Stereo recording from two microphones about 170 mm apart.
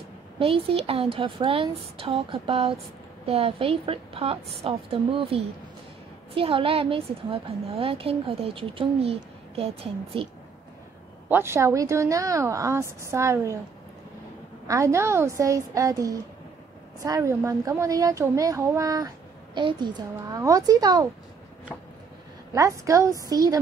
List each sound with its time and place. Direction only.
0.4 s a woman's voice: 35° right (ahead or behind)
11.2 s a woman's voice: 15° right (ahead or behind)
14.7 s a child's voice: 15° right (ahead or behind)
22.5 s a child's voice: 20° right (ahead or behind)